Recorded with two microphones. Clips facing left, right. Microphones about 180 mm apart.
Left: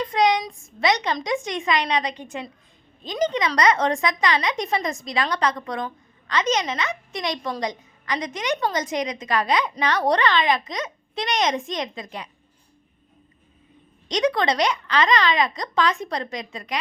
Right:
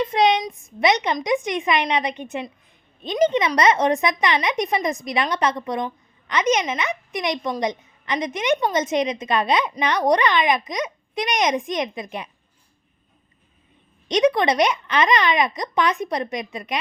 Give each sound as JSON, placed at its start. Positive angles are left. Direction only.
{"t": 0.0, "sound": "speech", "side_deg": -25}
{"t": 14.1, "sound": "speech", "side_deg": -20}